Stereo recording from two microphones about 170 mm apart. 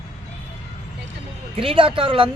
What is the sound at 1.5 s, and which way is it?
Speech, 35° right (ahead or behind).